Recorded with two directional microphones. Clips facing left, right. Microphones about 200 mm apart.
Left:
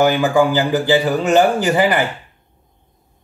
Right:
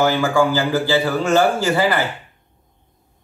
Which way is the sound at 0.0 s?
15° left (ahead or behind).